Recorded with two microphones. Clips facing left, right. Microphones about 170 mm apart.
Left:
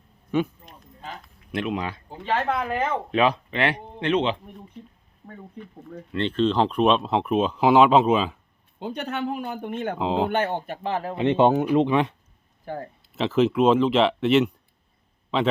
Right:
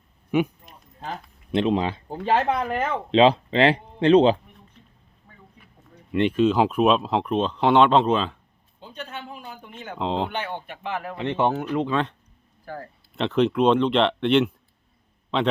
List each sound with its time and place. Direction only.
0.3 s speech: 15° right (ahead or behind)
1.5 s speech: 30° right (ahead or behind)
2.5 s speech: 10° right (ahead or behind)
3.1 s speech: 25° right (ahead or behind)
6.1 s speech: 10° right (ahead or behind); by 8.4 s 5° left (ahead or behind)
8.8 s speech: 70° left (ahead or behind); by 10.0 s 55° left (ahead or behind)
10.0 s speech: 5° left (ahead or behind)
10.2 s speech: 50° left (ahead or behind); by 12.9 s 20° left (ahead or behind)
13.1 s speech: 5° left (ahead or behind)